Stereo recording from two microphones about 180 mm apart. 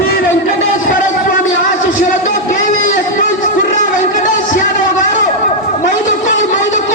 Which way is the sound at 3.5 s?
45° left (ahead or behind).